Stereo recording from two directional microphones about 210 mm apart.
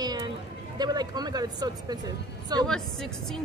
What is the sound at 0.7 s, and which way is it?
Speech, 20° right (ahead or behind).